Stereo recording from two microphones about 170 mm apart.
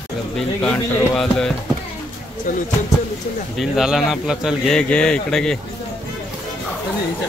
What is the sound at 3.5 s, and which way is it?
Speech, centre (ahead or behind).